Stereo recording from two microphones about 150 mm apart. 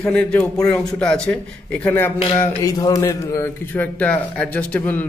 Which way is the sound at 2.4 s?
20° left (ahead or behind).